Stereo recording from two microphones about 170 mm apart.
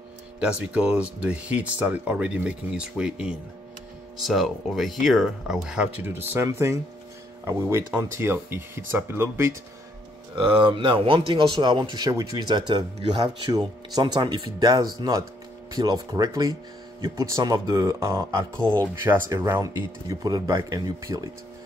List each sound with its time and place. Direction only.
0.4 s speech: 5° right (ahead or behind)
10.3 s speech: 30° right (ahead or behind)